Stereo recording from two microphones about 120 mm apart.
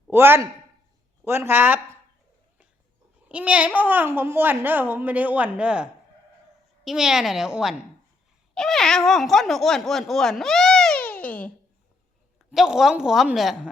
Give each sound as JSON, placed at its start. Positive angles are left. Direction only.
{"t": 0.1, "sound": "a child's voice", "side_deg": -20}
{"t": 3.2, "sound": "a child's voice", "side_deg": -10}
{"t": 12.5, "sound": "speech", "side_deg": -5}